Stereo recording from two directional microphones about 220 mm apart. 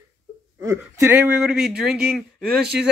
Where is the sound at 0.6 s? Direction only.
15° right (ahead or behind).